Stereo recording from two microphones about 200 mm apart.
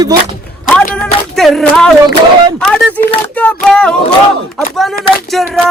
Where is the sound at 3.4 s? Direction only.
5° left (ahead or behind).